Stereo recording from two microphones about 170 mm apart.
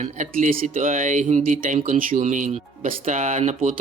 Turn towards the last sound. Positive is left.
turn(degrees=-40)  # may be behind; listen again after turning